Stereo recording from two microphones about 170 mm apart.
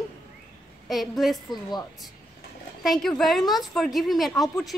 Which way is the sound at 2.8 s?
Centre (ahead or behind).